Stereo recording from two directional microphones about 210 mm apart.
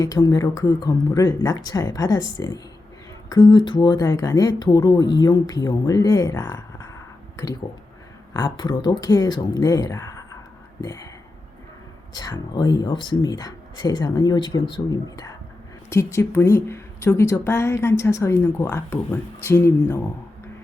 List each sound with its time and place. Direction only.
0.0 s a woman's voice: 15° left (ahead or behind)
8.3 s a woman's voice: 15° left (ahead or behind)
12.1 s a woman's voice: 20° left (ahead or behind)